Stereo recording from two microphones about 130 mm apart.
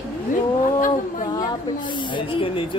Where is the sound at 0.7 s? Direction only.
90° left.